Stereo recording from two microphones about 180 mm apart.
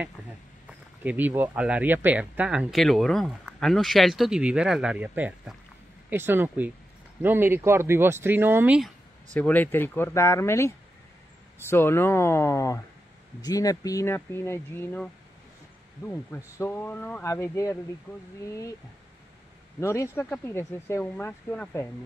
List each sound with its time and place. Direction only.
0.7 s speech: 10° right (ahead or behind)
9.3 s speech: 10° left (ahead or behind)
16.1 s speech: 15° left (ahead or behind)
19.8 s speech: 15° left (ahead or behind)